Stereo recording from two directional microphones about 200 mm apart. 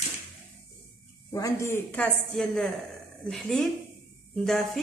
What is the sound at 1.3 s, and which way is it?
A woman's voice, 15° left (ahead or behind).